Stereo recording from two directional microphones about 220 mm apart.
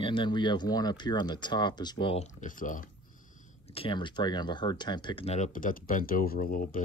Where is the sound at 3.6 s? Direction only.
25° left (ahead or behind).